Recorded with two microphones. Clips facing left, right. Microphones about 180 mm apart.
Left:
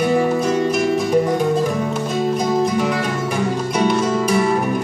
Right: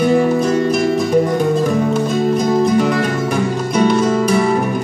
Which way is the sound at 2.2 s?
50° right (ahead or behind).